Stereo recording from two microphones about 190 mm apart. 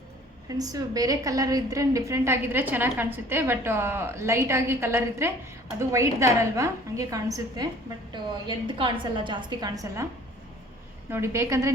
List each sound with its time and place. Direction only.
0.4 s a woman's voice: 20° right (ahead or behind)
11.1 s a woman's voice: 15° right (ahead or behind)